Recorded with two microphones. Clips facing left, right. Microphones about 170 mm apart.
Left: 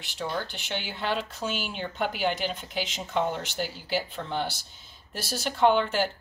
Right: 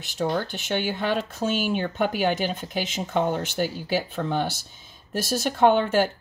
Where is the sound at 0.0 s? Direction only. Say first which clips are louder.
Right 6 dB; 45° right (ahead or behind).